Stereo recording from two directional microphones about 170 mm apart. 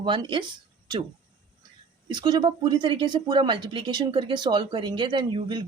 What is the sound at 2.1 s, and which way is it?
Speech, 25° right (ahead or behind).